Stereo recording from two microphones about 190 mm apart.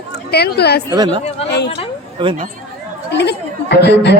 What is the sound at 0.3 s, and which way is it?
Speech, 60° left (ahead or behind).